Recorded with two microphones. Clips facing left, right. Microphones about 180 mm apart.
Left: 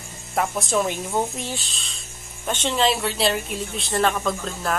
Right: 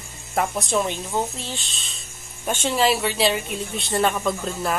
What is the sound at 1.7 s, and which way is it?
Speech, centre (ahead or behind).